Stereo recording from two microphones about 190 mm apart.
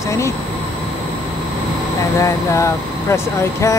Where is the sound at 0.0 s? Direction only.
15° left (ahead or behind).